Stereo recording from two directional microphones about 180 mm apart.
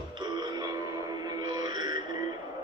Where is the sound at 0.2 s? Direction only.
25° right (ahead or behind).